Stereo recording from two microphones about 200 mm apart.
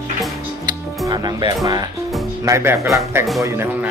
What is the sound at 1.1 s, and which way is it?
Speech, 20° right (ahead or behind).